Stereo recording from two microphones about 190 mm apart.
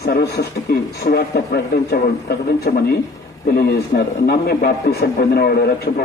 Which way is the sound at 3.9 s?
50° left (ahead or behind).